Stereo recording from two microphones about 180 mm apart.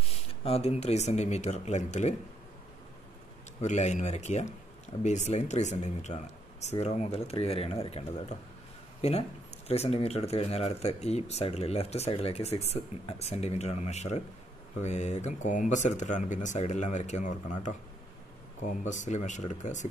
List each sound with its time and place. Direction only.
0.0 s speech: 35° left (ahead or behind)
3.6 s speech: 40° left (ahead or behind)